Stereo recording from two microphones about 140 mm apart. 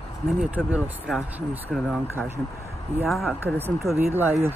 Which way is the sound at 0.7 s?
10° right (ahead or behind).